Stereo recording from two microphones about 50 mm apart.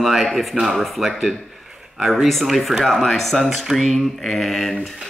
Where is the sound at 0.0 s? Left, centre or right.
Centre.